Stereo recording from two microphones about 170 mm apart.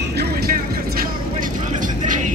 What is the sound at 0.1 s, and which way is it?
Vehicle, 65° right (ahead or behind).